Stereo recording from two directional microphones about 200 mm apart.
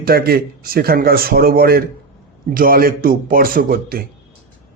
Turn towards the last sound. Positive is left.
turn(degrees=-45)  # may be behind; listen again after turning